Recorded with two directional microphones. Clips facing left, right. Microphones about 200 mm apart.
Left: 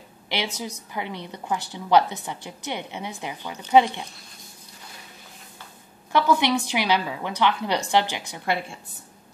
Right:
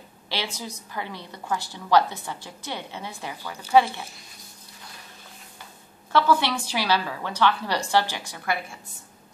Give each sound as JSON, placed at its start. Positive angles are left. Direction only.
{"t": 0.3, "sound": "a woman's voice", "side_deg": 15}
{"t": 6.1, "sound": "a woman's voice", "side_deg": 15}